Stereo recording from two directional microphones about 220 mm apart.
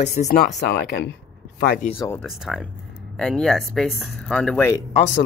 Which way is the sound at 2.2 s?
Centre (ahead or behind).